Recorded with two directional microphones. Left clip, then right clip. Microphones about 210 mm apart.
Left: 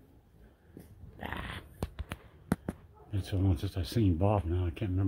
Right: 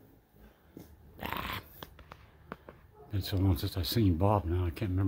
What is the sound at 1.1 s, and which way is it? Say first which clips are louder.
Dog: right 3 dB; centre (ahead or behind).